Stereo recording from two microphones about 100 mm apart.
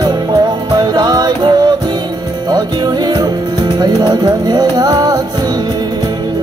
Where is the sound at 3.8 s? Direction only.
45° right (ahead or behind).